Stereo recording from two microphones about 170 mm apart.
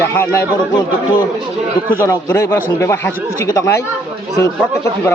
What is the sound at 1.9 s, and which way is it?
Speech, 15° left (ahead or behind).